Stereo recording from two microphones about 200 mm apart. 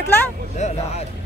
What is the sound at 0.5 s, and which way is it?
Speech, 35° left (ahead or behind).